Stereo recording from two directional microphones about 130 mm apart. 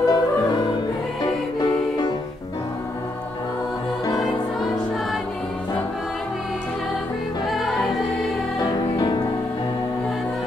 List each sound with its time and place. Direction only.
0.0 s music: 30° left (ahead or behind)
7.4 s music: centre (ahead or behind)
8.5 s music: 30° left (ahead or behind)